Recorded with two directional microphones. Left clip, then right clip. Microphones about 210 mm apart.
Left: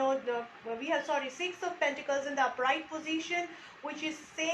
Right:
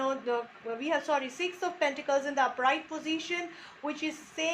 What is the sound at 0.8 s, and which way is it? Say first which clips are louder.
A woman's voice: right 2 dB; 55° right (ahead or behind).